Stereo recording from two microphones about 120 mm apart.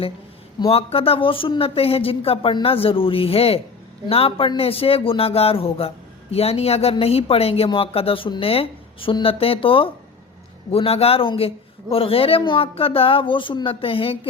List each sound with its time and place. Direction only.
0.6 s a man's voice: 55° left (ahead or behind)